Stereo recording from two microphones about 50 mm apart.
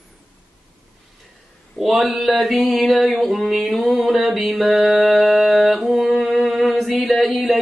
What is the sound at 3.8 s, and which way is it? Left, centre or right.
Mantra, right.